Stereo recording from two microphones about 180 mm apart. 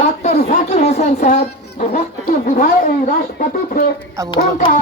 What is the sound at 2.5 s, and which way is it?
Speech, 45° left (ahead or behind).